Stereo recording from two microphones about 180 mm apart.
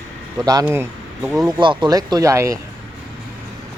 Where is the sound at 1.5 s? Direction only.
25° right (ahead or behind).